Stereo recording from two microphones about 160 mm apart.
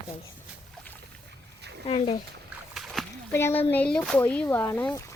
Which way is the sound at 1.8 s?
40° left (ahead or behind).